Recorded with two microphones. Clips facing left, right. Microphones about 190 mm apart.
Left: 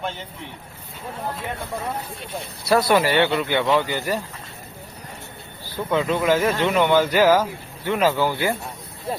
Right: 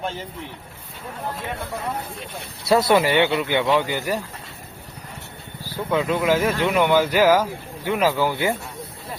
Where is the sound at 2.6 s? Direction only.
25° right (ahead or behind).